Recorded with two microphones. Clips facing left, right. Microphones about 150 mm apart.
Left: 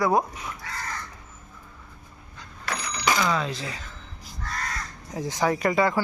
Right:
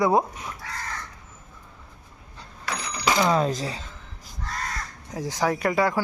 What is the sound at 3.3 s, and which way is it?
Speech, 40° right (ahead or behind).